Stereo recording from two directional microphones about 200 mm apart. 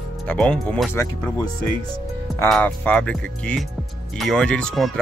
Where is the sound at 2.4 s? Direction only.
5° left (ahead or behind).